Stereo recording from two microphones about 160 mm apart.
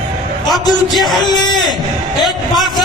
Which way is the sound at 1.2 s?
25° left (ahead or behind).